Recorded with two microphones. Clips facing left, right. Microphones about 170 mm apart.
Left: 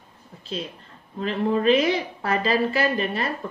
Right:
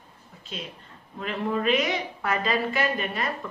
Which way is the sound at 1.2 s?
30° left (ahead or behind).